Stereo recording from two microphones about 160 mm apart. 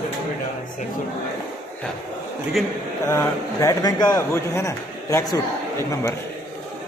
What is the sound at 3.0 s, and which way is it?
Speech, 20° left (ahead or behind).